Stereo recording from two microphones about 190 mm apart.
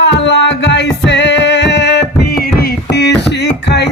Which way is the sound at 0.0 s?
70° left (ahead or behind).